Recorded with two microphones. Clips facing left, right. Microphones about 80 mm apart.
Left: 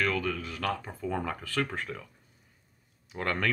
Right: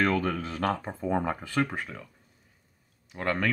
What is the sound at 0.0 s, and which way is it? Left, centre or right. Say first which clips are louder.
Speech: right 4 dB; right.